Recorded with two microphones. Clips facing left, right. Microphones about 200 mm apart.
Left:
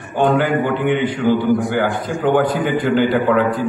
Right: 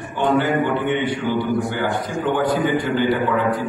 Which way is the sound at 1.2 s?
40° left (ahead or behind).